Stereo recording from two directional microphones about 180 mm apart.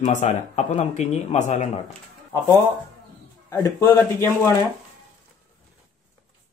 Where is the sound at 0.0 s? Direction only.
40° left (ahead or behind).